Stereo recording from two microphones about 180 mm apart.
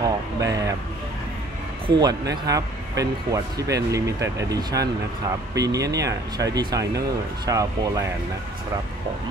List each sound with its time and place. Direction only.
0.5 s speech: 20° right (ahead or behind)
1.9 s speech: 20° right (ahead or behind)